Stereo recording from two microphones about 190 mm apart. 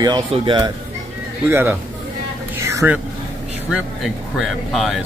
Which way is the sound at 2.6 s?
15° right (ahead or behind).